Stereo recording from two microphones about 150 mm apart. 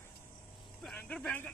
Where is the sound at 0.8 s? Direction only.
5° left (ahead or behind).